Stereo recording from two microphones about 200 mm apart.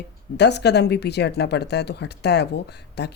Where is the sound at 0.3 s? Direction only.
55° left (ahead or behind).